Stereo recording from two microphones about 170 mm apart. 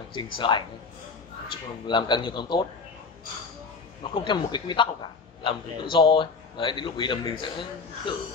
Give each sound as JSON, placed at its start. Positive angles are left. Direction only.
{"t": 0.1, "sound": "a man's voice", "side_deg": 25}
{"t": 4.0, "sound": "a man's voice", "side_deg": 30}